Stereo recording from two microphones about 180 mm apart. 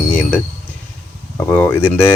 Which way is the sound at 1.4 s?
10° left (ahead or behind).